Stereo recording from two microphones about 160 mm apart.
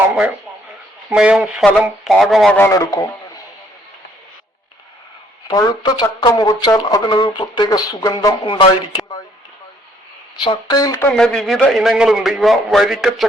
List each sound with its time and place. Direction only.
1.1 s a man's voice: 5° right (ahead or behind)
2.6 s speech: 15° left (ahead or behind)
5.5 s speech: 25° left (ahead or behind)
10.4 s speech: 25° left (ahead or behind)
11.1 s a man's voice: 5° left (ahead or behind)